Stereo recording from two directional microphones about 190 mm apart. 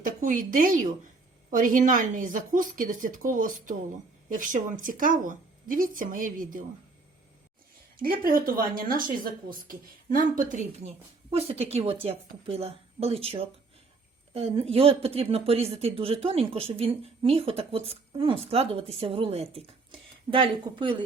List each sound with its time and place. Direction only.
0.0 s speech: 45° right (ahead or behind)
7.9 s speech: 50° right (ahead or behind); by 21.0 s 25° right (ahead or behind)